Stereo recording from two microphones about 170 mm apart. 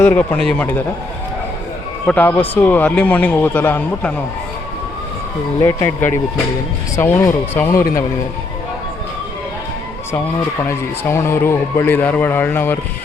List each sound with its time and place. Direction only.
0.0 s speech: 10° left (ahead or behind)
2.0 s speech: 10° left (ahead or behind)
5.5 s speech: 15° left (ahead or behind)
10.6 s speech: 15° left (ahead or behind)